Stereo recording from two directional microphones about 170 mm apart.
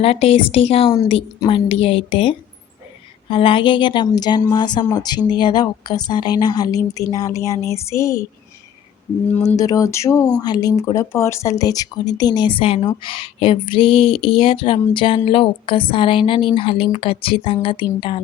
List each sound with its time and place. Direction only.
0.0 s a woman's voice: 35° left (ahead or behind); by 8.3 s 15° left (ahead or behind)
9.5 s a woman's voice: 20° left (ahead or behind)